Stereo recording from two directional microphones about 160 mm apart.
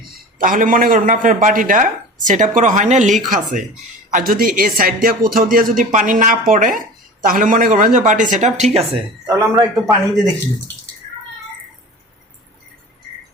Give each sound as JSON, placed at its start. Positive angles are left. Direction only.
{"t": 0.3, "sound": "speech", "side_deg": -60}
{"t": 9.2, "sound": "a man's voice", "side_deg": -20}